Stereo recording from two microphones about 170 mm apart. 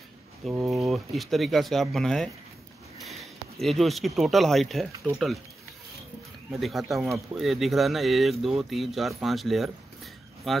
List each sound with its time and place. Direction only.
0.7 s speech: centre (ahead or behind)
6.5 s speech: centre (ahead or behind)